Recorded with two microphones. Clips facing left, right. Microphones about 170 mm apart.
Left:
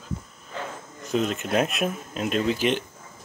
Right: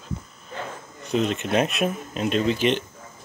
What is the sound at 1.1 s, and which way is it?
Speech, centre (ahead or behind).